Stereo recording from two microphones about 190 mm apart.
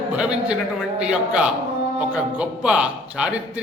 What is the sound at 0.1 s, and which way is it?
A man's voice, 5° right (ahead or behind).